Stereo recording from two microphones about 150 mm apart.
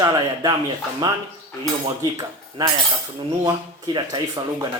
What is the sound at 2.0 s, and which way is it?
Speech, 25° right (ahead or behind).